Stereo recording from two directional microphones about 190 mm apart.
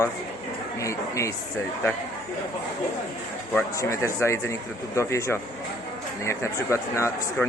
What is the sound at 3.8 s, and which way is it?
Speech, 15° left (ahead or behind).